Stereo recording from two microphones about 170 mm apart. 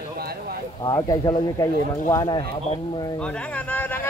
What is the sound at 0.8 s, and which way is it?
Speech, 25° left (ahead or behind).